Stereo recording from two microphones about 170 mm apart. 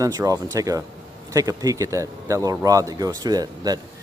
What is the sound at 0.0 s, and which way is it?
Speech, 20° right (ahead or behind).